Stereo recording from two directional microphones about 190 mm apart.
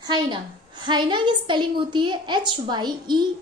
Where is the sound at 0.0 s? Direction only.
25° right (ahead or behind).